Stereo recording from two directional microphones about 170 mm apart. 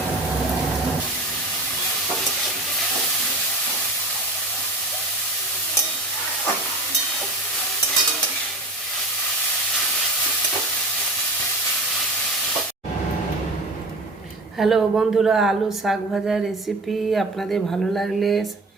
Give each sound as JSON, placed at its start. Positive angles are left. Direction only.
{"t": 14.6, "sound": "a woman's voice", "side_deg": 0}